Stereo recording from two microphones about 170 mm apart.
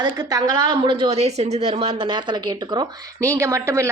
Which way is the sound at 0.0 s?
20° right (ahead or behind).